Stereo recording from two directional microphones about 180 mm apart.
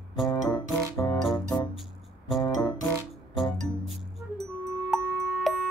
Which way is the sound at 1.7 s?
Centre (ahead or behind).